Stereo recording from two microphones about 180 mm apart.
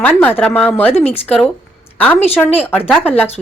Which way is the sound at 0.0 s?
10° left (ahead or behind).